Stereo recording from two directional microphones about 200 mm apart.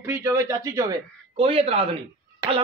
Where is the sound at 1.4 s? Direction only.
30° right (ahead or behind).